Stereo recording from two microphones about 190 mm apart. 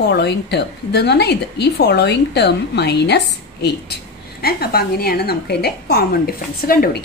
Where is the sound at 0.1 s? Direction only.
65° left (ahead or behind).